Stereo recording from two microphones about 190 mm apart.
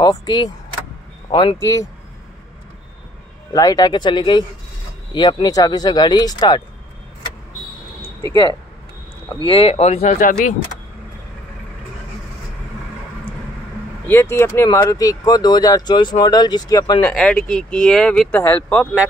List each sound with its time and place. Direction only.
0.0 s speech: 20° left (ahead or behind)
3.5 s speech: 20° left (ahead or behind)
9.4 s speech: 30° left (ahead or behind)
14.0 s speech: 10° left (ahead or behind)
17.0 s speech: 5° left (ahead or behind)